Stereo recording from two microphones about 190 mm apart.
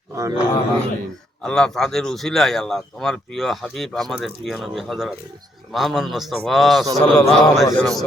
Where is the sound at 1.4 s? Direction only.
5° left (ahead or behind).